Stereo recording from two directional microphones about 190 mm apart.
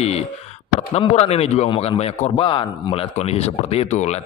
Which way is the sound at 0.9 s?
30° left (ahead or behind).